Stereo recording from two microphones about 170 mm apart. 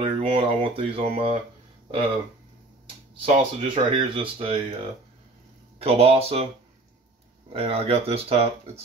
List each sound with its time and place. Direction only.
0.0 s speech: 35° right (ahead or behind)
3.2 s speech: 35° right (ahead or behind)
5.8 s speech: 35° right (ahead or behind)
7.5 s speech: 35° right (ahead or behind)